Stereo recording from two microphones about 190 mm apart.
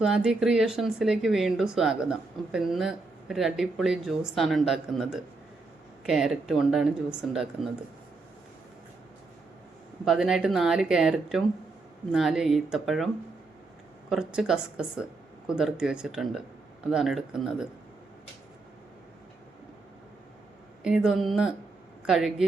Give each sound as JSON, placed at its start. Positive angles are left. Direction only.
{"t": 0.0, "sound": "speech", "side_deg": -5}
{"t": 10.1, "sound": "speech", "side_deg": -5}
{"t": 14.1, "sound": "speech", "side_deg": -5}
{"t": 20.8, "sound": "speech", "side_deg": -5}